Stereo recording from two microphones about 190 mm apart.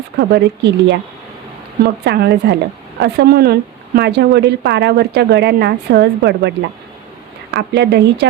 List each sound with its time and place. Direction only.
0.2 s a woman's voice: 65° right (ahead or behind)
7.5 s a woman's voice: 65° right (ahead or behind)